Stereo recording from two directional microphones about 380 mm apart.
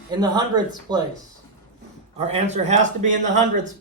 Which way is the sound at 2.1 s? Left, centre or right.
Centre.